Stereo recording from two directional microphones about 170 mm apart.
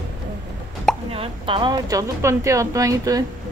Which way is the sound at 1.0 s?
35° right (ahead or behind).